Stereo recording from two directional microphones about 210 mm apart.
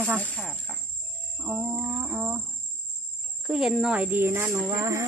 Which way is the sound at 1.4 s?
10° right (ahead or behind).